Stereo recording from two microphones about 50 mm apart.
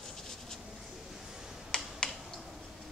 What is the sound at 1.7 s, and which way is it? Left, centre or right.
Finger snapping, left.